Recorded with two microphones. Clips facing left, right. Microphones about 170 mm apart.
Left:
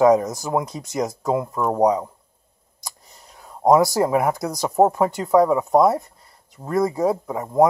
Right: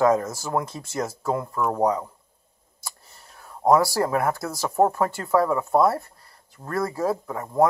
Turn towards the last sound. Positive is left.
turn(degrees=15)  # may be behind; listen again after turning